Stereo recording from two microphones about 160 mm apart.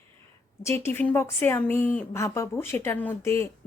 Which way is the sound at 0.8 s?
10° left (ahead or behind).